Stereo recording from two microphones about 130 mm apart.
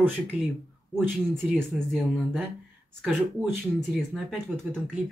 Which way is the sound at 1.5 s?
5° left (ahead or behind).